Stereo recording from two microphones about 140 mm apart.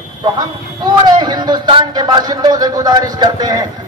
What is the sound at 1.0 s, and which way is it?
A man's voice, 30° right (ahead or behind).